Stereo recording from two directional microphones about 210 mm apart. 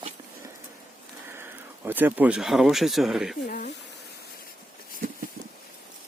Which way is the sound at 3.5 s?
40° left (ahead or behind).